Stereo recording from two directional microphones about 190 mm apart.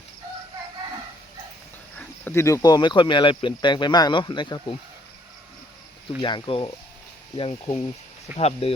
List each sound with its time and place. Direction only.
2.0 s speech: 10° left (ahead or behind)
6.1 s speech: 25° left (ahead or behind)